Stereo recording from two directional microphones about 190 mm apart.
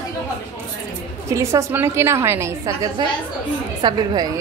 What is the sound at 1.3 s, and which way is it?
A woman's voice, 15° right (ahead or behind).